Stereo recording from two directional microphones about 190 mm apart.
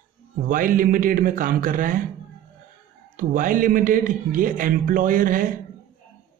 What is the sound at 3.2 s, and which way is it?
A man's voice, 45° right (ahead or behind).